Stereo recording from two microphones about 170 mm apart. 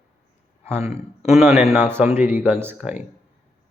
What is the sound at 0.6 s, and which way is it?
Speech, 15° right (ahead or behind).